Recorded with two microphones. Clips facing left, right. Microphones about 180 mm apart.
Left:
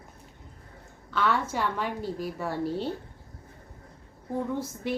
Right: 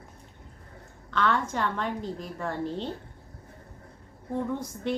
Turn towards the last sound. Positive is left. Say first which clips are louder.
# even
turn(degrees=5)  # may be behind; listen again after turning